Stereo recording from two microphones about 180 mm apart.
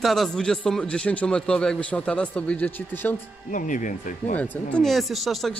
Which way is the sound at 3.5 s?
45° left (ahead or behind).